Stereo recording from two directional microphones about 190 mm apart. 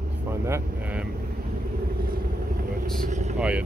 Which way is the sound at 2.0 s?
50° right (ahead or behind).